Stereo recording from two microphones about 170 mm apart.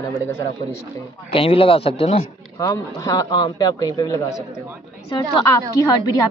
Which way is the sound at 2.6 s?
20° left (ahead or behind).